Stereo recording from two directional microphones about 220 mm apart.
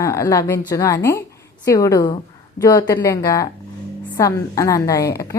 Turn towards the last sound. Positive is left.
turn(degrees=15)  # may be behind; listen again after turning